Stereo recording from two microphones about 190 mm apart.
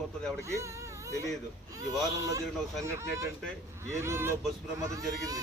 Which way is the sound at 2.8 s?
15° right (ahead or behind).